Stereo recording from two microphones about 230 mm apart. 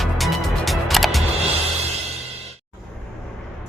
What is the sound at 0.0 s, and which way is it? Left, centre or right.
Music, centre.